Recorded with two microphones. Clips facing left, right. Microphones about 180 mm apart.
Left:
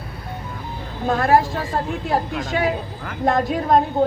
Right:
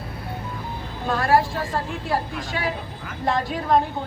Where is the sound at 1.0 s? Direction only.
45° left (ahead or behind).